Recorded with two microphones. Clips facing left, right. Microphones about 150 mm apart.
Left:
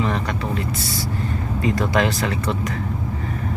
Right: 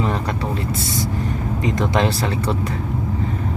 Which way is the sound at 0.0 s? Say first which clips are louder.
Right 1 dB; 30° right (ahead or behind).